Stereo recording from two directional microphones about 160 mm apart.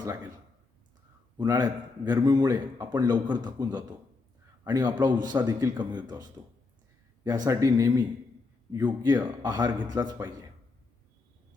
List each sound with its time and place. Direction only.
1.4 s a man's voice: 25° right (ahead or behind)